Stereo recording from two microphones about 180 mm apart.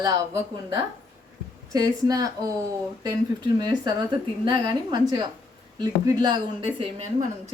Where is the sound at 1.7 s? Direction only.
20° right (ahead or behind).